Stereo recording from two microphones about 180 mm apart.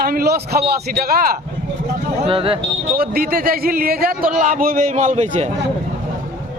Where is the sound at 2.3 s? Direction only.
30° right (ahead or behind).